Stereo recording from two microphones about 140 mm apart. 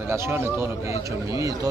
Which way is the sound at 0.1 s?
20° right (ahead or behind).